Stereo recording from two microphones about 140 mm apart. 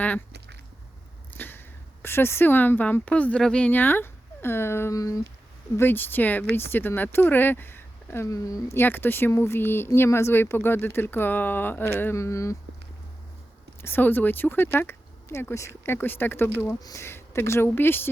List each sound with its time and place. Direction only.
1.3 s speech: 15° left (ahead or behind)
13.8 s speech: 15° left (ahead or behind)